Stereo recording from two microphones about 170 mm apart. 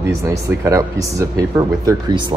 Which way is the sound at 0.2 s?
20° right (ahead or behind).